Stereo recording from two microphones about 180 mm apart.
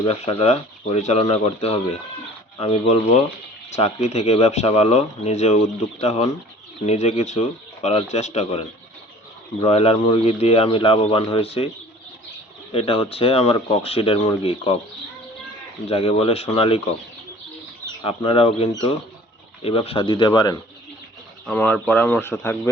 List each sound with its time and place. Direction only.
0.0 s speech: 30° left (ahead or behind)
12.7 s speech: 30° left (ahead or behind)
15.9 s speech: 30° left (ahead or behind)
18.0 s speech: 30° left (ahead or behind)
21.4 s speech: 10° left (ahead or behind)